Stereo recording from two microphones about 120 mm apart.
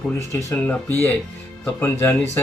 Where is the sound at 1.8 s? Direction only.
20° left (ahead or behind).